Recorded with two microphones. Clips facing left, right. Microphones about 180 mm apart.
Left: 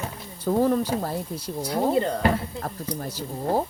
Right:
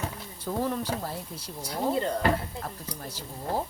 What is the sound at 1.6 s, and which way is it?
Speech, 75° left (ahead or behind).